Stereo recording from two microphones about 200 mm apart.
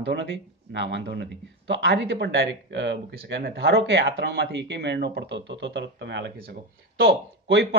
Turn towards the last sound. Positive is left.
turn(degrees=-60)  # may be behind; listen again after turning